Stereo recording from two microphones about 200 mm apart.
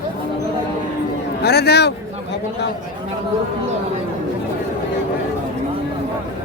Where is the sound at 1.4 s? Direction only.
55° left (ahead or behind).